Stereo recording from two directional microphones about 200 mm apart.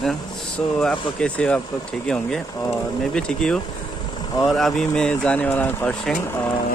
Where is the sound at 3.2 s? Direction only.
5° left (ahead or behind).